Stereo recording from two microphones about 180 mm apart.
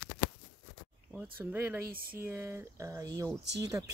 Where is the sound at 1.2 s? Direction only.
10° right (ahead or behind).